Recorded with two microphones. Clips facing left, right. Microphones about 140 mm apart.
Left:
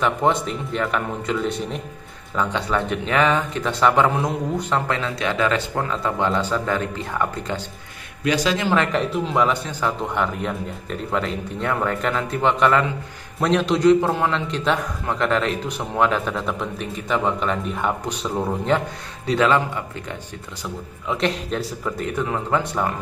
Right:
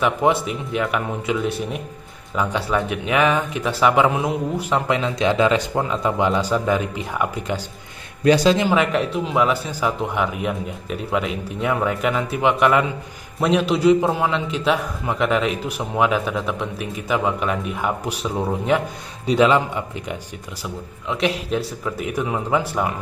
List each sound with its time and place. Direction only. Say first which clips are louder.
0.0 s a man's voice: right 1 dB; 5° right (ahead or behind)
8.2 s a man's voice: right 6 dB; 35° right (ahead or behind)
8.5 s a man's voice: right 2 dB; 10° right (ahead or behind)
19.2 s a man's voice: right 2 dB; 15° right (ahead or behind)
21.1 s speech: right 1 dB; 5° right (ahead or behind)